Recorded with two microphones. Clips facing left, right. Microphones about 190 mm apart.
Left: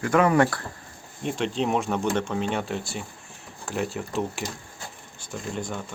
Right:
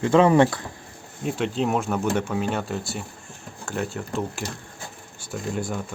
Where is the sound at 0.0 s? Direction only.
25° right (ahead or behind).